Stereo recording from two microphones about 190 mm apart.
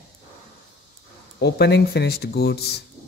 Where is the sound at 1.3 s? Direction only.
60° left (ahead or behind).